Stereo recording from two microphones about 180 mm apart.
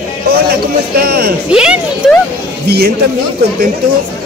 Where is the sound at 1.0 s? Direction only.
60° right (ahead or behind).